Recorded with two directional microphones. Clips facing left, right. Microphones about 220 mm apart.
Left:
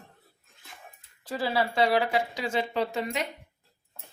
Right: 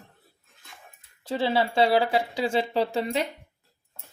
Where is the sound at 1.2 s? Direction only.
25° right (ahead or behind).